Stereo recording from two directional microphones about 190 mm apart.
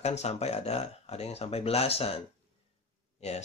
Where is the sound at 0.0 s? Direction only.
35° left (ahead or behind).